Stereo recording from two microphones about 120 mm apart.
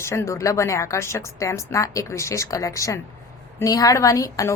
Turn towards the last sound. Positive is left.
turn(degrees=25)  # may be behind; listen again after turning